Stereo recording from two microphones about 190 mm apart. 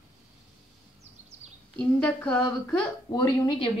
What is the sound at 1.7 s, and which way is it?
Speech, 5° left (ahead or behind).